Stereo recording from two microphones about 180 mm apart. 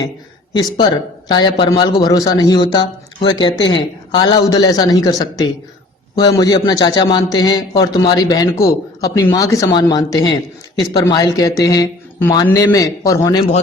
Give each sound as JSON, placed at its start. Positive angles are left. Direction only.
{"t": 0.5, "sound": "a man's voice", "side_deg": 20}